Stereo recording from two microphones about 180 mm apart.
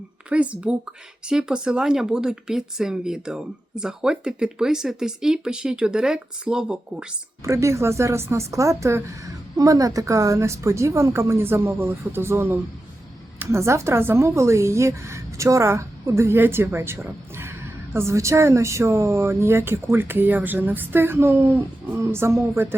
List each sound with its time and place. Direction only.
0.3 s speech: 5° right (ahead or behind)
7.4 s speech: 15° right (ahead or behind)